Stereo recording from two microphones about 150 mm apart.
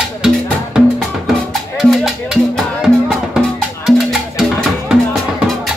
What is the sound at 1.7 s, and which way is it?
Music, 5° right (ahead or behind).